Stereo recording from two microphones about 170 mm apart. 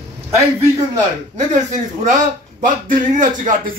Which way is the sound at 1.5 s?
50° right (ahead or behind).